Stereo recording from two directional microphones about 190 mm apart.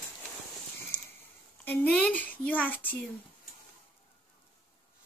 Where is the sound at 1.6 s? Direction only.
5° left (ahead or behind).